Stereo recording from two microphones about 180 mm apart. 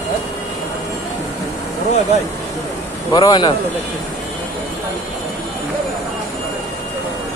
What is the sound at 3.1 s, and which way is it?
Speech, 25° left (ahead or behind).